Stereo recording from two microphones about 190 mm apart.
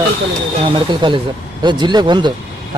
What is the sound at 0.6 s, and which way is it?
Speech, 25° right (ahead or behind).